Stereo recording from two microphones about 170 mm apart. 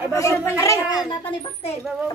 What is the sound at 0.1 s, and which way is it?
Speech, 20° left (ahead or behind).